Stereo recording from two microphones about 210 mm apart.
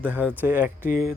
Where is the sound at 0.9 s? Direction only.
40° left (ahead or behind).